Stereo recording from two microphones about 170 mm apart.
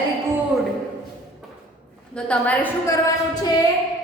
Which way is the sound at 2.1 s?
5° left (ahead or behind).